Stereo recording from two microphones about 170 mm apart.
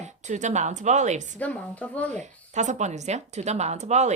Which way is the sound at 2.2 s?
45° right (ahead or behind).